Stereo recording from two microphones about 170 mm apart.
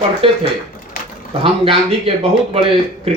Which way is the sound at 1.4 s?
30° right (ahead or behind).